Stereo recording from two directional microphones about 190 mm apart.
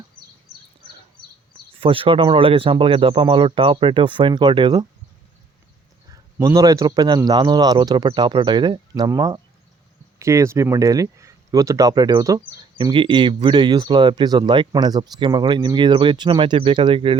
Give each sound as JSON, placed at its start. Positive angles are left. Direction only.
{"t": 0.8, "sound": "a sound", "side_deg": -35}
{"t": 1.7, "sound": "speech", "side_deg": -30}
{"t": 6.1, "sound": "speech", "side_deg": -15}